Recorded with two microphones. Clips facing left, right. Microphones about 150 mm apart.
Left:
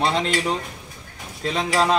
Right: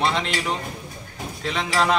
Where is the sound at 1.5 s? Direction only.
35° left (ahead or behind).